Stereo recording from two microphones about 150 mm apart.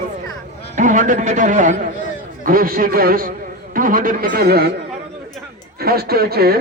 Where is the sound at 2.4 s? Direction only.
75° right (ahead or behind).